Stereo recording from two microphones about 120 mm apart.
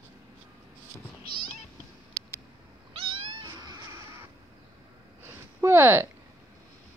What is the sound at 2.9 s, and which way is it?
Cat, 50° right (ahead or behind).